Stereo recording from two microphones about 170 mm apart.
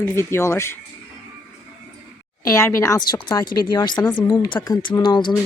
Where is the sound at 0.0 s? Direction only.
15° left (ahead or behind).